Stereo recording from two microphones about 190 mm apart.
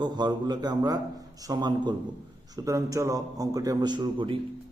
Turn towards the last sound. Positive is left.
turn(degrees=-25)  # may be behind; listen again after turning